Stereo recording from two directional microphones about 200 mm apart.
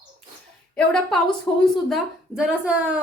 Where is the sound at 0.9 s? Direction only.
Centre (ahead or behind).